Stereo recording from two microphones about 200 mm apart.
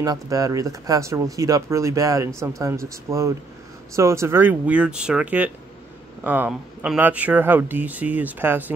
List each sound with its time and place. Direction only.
0.0 s speech: 20° right (ahead or behind)